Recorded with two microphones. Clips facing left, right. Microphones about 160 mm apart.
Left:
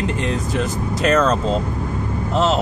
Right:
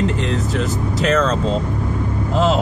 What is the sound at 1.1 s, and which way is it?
Speech, 10° left (ahead or behind).